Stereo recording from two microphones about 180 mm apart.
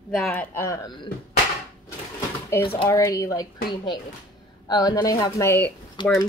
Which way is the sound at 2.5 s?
15° left (ahead or behind).